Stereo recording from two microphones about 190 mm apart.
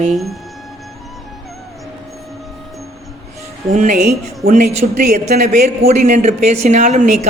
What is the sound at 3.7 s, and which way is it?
Speech, 45° right (ahead or behind).